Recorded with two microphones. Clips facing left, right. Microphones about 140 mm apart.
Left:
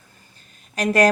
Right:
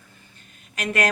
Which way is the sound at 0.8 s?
35° left (ahead or behind).